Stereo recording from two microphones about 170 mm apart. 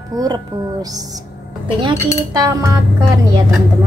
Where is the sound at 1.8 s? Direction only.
25° right (ahead or behind).